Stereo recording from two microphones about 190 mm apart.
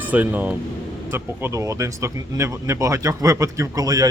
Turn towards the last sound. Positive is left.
turn(degrees=-20)  # may be behind; listen again after turning